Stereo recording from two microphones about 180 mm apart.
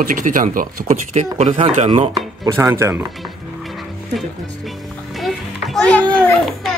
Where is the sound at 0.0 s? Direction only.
50° right (ahead or behind).